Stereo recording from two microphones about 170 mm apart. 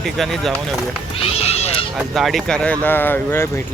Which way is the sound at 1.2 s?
35° left (ahead or behind).